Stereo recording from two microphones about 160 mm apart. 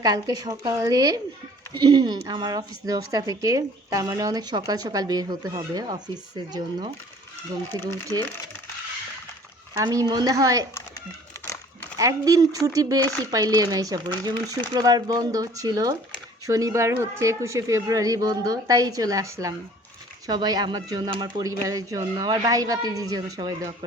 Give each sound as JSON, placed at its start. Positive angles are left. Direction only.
{"t": 0.0, "sound": "speech", "side_deg": -25}
{"t": 9.7, "sound": "speech", "side_deg": -20}
{"t": 11.9, "sound": "speech", "side_deg": -20}